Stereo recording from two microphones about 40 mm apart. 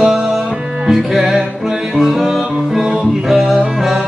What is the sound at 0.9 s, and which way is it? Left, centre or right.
Music, centre.